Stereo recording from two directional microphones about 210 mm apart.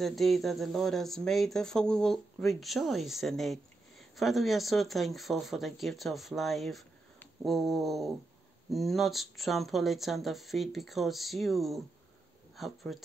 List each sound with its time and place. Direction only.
0.0 s speech: centre (ahead or behind)